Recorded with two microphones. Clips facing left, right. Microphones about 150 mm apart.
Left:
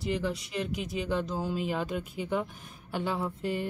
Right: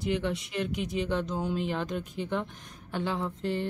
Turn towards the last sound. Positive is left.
turn(degrees=10)  # may be behind; listen again after turning